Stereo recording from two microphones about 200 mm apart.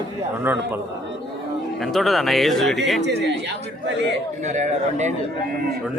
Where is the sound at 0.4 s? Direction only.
10° right (ahead or behind).